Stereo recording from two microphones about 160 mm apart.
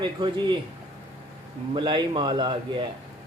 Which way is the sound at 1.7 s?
30° right (ahead or behind).